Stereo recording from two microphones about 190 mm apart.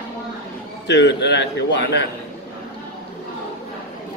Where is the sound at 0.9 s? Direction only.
65° left (ahead or behind).